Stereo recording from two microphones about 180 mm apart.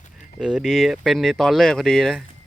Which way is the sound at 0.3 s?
Centre (ahead or behind).